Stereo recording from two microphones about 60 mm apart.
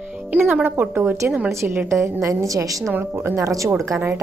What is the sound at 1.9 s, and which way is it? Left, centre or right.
A woman's voice, right.